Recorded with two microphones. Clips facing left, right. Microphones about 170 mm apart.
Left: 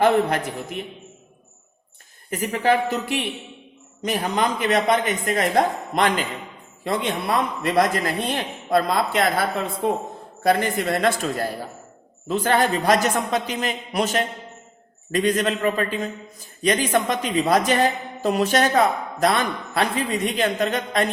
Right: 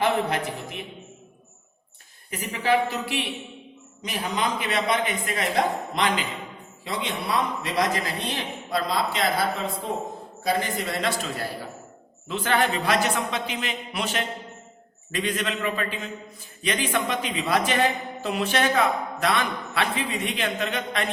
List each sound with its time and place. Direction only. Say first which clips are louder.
0.0 s a man's voice: left 5 dB; 45° left (ahead or behind)
2.5 s a man's voice: left 2 dB; 50° left (ahead or behind)
12.3 s a man's voice: left 4 dB; 40° left (ahead or behind)